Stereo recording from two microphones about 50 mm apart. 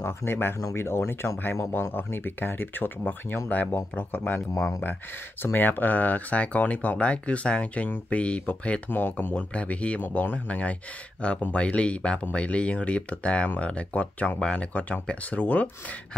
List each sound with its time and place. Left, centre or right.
0.0 s speech: left
3.7 s speech: left
4.6 s speech: left
5.4 s speech: left
10.0 s speech: left